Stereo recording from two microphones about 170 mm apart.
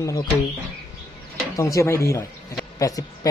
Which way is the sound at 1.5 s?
20° left (ahead or behind).